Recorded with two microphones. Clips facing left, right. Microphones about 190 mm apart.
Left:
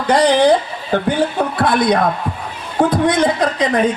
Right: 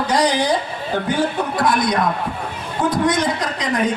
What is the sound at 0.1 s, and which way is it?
A man's voice, 60° left (ahead or behind).